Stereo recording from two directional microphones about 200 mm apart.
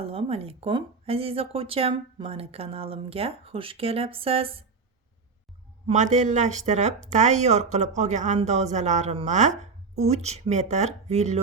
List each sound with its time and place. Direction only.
0.0 s speech: 30° right (ahead or behind)
5.9 s speech: 35° right (ahead or behind)